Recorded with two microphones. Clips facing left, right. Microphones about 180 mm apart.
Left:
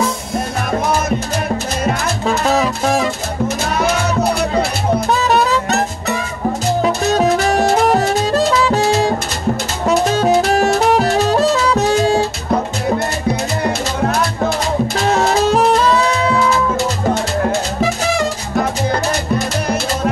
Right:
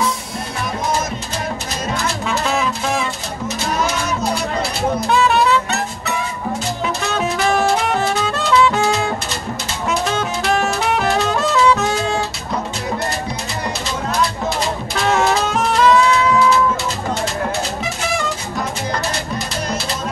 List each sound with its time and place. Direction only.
2.2 s music: 40° left (ahead or behind)
3.4 s music: 55° left (ahead or behind)
5.1 s music: 40° left (ahead or behind)
15.0 s music: 35° left (ahead or behind)